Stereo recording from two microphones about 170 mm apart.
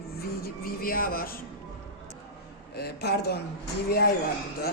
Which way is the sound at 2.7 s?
70° left (ahead or behind).